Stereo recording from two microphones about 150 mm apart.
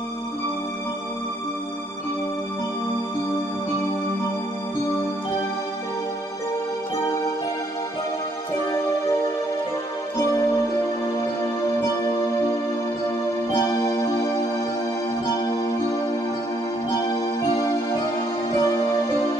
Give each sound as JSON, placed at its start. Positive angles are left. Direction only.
{"t": 10.1, "sound": "music", "side_deg": 20}
{"t": 13.6, "sound": "music", "side_deg": 20}
{"t": 18.6, "sound": "music", "side_deg": 25}